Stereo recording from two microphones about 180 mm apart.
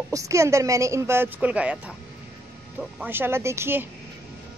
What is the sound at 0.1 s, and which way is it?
Speech, 15° right (ahead or behind).